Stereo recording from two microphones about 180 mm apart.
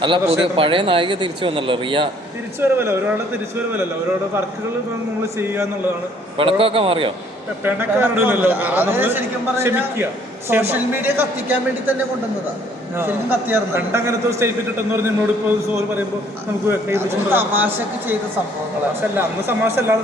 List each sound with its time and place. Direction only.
0.0 s speech: 30° right (ahead or behind)
2.6 s a man's voice: 15° right (ahead or behind)
6.3 s a man's voice: 30° right (ahead or behind)
7.6 s a man's voice: 10° right (ahead or behind)
13.0 s a man's voice: 10° right (ahead or behind)
16.6 s a man's voice: 10° right (ahead or behind)
19.1 s a man's voice: 10° right (ahead or behind)